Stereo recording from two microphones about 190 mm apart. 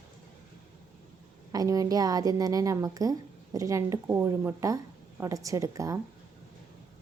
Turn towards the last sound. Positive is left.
turn(degrees=-15)  # may be behind; listen again after turning